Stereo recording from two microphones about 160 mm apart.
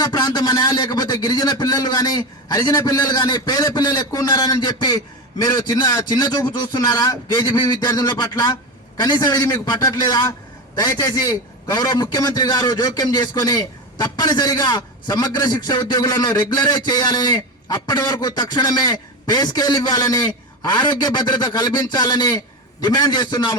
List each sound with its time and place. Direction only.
0.0 s a man's voice: 25° left (ahead or behind)